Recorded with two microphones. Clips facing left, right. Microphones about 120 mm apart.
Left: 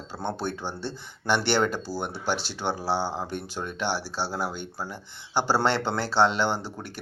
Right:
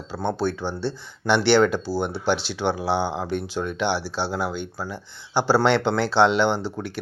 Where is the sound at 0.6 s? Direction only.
15° left (ahead or behind).